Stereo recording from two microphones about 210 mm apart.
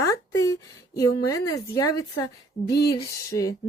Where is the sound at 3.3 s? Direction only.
15° left (ahead or behind).